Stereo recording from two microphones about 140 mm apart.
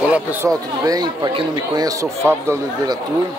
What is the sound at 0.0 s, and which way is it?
Speech, 10° right (ahead or behind).